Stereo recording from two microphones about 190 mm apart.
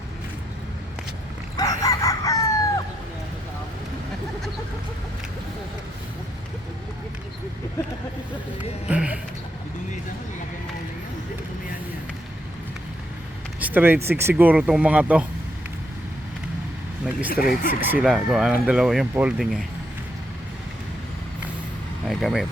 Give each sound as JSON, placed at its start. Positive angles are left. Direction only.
{"t": 1.5, "sound": "chicken", "side_deg": 20}
{"t": 8.9, "sound": "music", "side_deg": -5}
{"t": 13.6, "sound": "speech", "side_deg": -10}
{"t": 17.2, "sound": "speech", "side_deg": 50}
{"t": 17.7, "sound": "speech", "side_deg": -10}
{"t": 22.0, "sound": "speech", "side_deg": 0}